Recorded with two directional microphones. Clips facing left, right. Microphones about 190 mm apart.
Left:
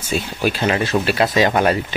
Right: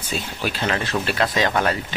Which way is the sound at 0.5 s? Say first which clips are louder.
Left 6 dB; 10° left (ahead or behind).